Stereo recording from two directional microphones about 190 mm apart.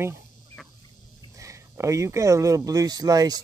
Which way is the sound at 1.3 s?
15° right (ahead or behind).